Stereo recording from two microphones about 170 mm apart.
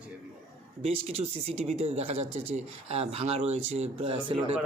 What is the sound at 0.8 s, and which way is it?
Speech, 35° right (ahead or behind).